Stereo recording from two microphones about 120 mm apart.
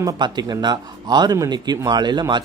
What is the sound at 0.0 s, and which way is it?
A man's voice, 35° right (ahead or behind).